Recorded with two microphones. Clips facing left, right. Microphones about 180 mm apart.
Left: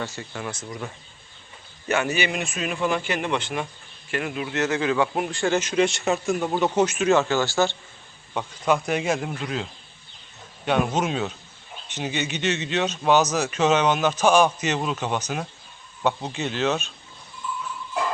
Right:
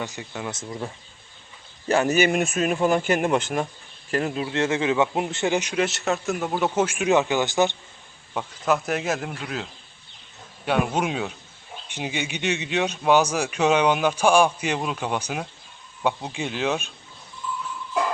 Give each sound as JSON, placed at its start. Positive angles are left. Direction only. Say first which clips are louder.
{"t": 0.0, "sound": "a man's voice", "louder": "even", "side_deg": -15}
{"t": 1.9, "sound": "a man's voice", "louder": "right 4 dB", "side_deg": -40}
{"t": 5.8, "sound": "speech", "louder": "left 2 dB", "side_deg": 0}
{"t": 8.3, "sound": "a man's voice", "louder": "left 1 dB", "side_deg": 0}
{"t": 10.7, "sound": "speech", "louder": "left 1 dB", "side_deg": -10}